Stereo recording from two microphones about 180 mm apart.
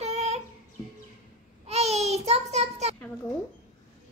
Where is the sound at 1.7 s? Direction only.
35° right (ahead or behind).